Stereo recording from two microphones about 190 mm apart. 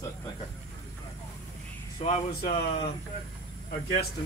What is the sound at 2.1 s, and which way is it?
Speech, 40° left (ahead or behind).